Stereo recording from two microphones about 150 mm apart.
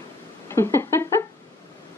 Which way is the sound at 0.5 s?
20° left (ahead or behind).